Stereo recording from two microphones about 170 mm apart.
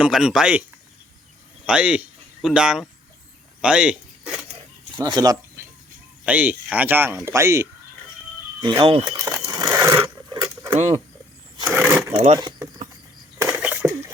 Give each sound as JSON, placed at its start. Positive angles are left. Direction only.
{"t": 0.0, "sound": "speech", "side_deg": -5}
{"t": 1.6, "sound": "speech", "side_deg": -5}
{"t": 3.6, "sound": "zipper", "side_deg": -5}
{"t": 4.9, "sound": "speech", "side_deg": -25}
{"t": 6.2, "sound": "speech", "side_deg": -10}
{"t": 8.6, "sound": "speech", "side_deg": -25}
{"t": 9.1, "sound": "speech", "side_deg": -20}
{"t": 9.5, "sound": "a sound", "side_deg": -25}
{"t": 11.7, "sound": "speech", "side_deg": -15}
{"t": 12.1, "sound": "speech", "side_deg": -30}
{"t": 13.4, "sound": "a sound", "side_deg": -10}